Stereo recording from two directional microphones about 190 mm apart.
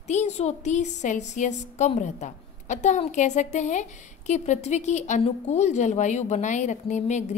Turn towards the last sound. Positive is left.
turn(degrees=40)  # may be behind; listen again after turning